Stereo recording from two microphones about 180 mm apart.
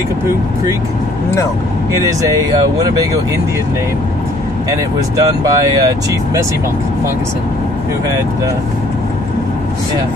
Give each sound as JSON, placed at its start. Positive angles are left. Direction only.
{"t": 1.9, "sound": "speech", "side_deg": -20}
{"t": 4.6, "sound": "speech", "side_deg": -20}